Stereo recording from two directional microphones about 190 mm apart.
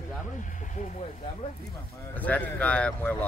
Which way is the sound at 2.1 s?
10° left (ahead or behind).